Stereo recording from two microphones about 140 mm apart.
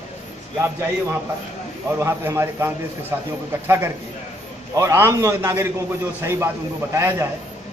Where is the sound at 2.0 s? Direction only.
20° right (ahead or behind).